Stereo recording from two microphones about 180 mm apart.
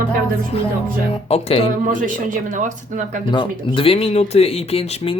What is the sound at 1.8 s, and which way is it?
Speech, 45° right (ahead or behind).